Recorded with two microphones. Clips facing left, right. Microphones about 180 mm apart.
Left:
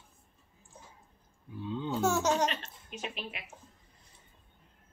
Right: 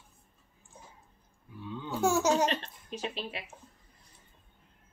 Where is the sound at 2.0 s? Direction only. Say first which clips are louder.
Right 3 dB; 10° right (ahead or behind).